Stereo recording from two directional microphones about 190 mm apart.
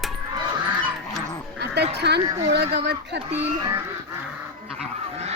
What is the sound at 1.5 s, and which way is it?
Dog, 60° right (ahead or behind).